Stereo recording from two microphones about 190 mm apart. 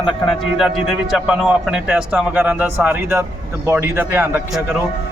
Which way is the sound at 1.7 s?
5° right (ahead or behind).